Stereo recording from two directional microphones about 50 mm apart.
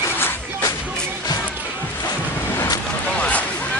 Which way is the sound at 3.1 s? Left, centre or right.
Left.